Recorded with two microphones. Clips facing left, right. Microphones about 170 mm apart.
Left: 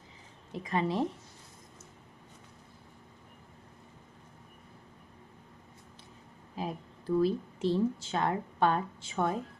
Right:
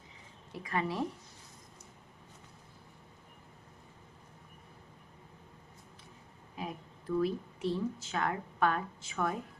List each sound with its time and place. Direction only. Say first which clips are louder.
0.5 s speech: left 4 dB; 25° left (ahead or behind)
6.6 s a sound: left 4 dB; 30° left (ahead or behind)
7.2 s speech: left 4 dB; 30° left (ahead or behind)